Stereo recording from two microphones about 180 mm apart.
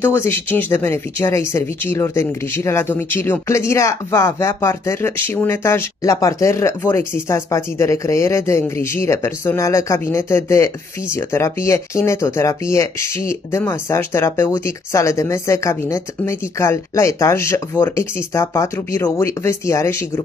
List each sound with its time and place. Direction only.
0.0 s speech: 15° left (ahead or behind)